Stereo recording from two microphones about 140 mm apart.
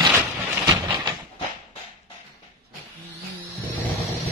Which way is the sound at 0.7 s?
25° right (ahead or behind).